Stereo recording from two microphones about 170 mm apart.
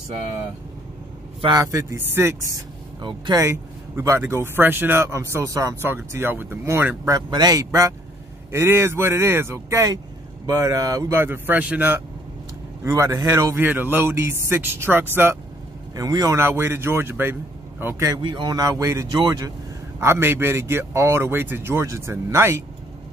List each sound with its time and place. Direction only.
1.4 s speech: 20° right (ahead or behind)
3.0 s speech: 25° right (ahead or behind)
7.2 s speech: 25° right (ahead or behind)